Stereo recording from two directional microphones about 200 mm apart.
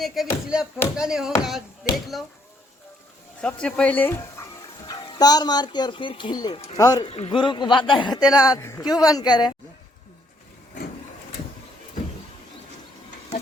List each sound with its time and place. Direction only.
0.0 s speech: centre (ahead or behind)
3.4 s speech: 5° left (ahead or behind); by 9.5 s 20° left (ahead or behind)